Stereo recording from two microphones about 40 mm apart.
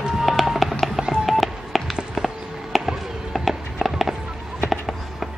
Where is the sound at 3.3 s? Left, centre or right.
Centre.